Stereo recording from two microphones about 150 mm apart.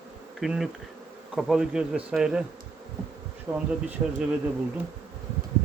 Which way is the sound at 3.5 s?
10° right (ahead or behind).